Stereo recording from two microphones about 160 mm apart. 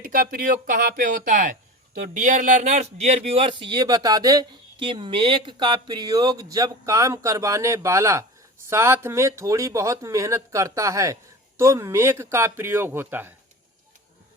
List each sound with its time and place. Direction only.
0.0 s speech: 60° right (ahead or behind); by 13.3 s 10° right (ahead or behind)